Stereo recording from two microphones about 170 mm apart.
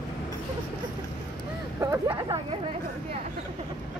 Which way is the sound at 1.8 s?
15° right (ahead or behind).